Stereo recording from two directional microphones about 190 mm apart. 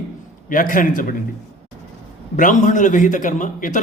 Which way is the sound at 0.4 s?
45° left (ahead or behind).